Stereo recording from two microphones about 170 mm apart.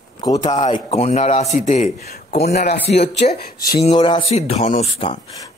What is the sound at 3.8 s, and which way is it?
A man's voice, 35° left (ahead or behind).